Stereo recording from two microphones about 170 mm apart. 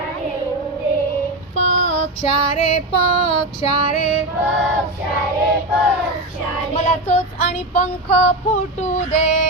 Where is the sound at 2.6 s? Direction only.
40° left (ahead or behind).